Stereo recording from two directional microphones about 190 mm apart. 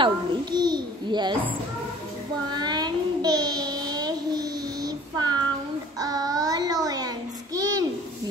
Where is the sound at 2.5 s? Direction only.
20° right (ahead or behind).